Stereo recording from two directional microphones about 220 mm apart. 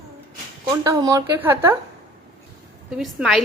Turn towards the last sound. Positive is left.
turn(degrees=0)  # may be behind; listen again after turning